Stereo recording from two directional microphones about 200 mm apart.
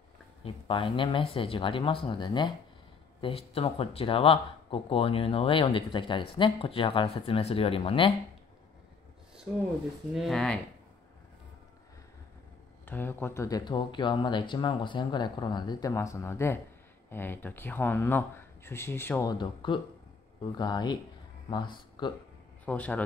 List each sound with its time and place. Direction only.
0.4 s speech: 25° left (ahead or behind)
10.1 s speech: centre (ahead or behind)
12.8 s speech: 10° left (ahead or behind)
19.3 s speech: 25° left (ahead or behind)
22.7 s speech: 5° left (ahead or behind)